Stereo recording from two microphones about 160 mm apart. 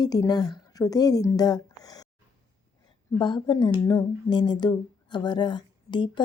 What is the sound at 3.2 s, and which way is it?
Speech, 30° left (ahead or behind).